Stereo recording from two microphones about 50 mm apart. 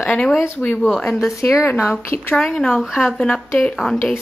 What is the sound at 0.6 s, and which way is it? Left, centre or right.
Speech, left.